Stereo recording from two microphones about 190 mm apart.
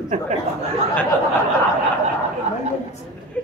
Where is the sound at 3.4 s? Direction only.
5° left (ahead or behind).